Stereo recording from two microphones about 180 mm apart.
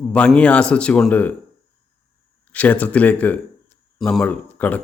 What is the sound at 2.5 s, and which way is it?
Speech, 10° left (ahead or behind).